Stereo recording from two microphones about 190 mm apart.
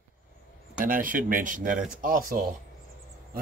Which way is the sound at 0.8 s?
45° right (ahead or behind).